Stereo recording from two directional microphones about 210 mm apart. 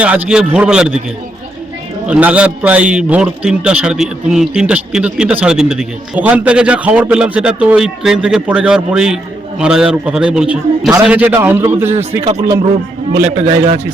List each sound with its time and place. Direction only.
0.0 s a man's voice: 5° right (ahead or behind)
2.0 s a man's voice: 5° right (ahead or behind)
11.9 s a man's voice: 30° right (ahead or behind)